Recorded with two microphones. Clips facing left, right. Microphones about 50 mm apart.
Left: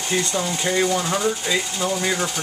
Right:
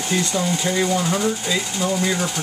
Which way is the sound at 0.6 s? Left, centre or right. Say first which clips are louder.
Left 3 dB; centre.